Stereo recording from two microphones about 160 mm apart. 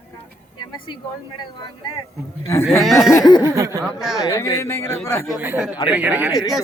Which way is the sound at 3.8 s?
5° right (ahead or behind).